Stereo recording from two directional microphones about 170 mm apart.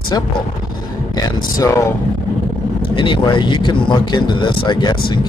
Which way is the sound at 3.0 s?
30° left (ahead or behind).